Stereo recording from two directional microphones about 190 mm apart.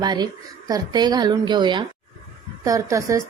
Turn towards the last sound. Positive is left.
turn(degrees=-15)  # may be behind; listen again after turning